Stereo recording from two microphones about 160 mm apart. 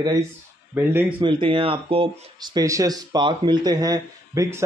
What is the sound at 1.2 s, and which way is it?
Speech, 30° right (ahead or behind).